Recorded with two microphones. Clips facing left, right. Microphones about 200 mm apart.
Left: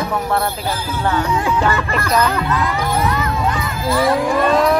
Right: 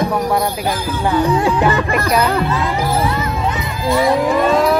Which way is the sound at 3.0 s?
25° right (ahead or behind).